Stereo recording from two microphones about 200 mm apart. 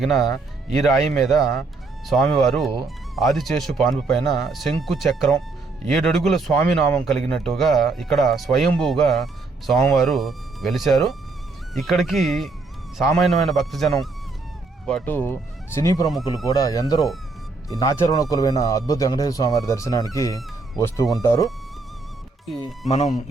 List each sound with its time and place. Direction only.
0.0 s a man's voice: centre (ahead or behind); by 21.4 s 15° left (ahead or behind)
23.0 s speech: 35° left (ahead or behind)